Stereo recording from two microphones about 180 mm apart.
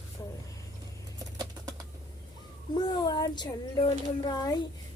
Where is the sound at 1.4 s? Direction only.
20° right (ahead or behind).